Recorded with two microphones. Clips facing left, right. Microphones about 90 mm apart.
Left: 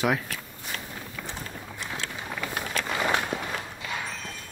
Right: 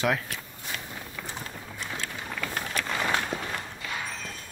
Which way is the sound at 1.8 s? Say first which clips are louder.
Even; 10° left (ahead or behind).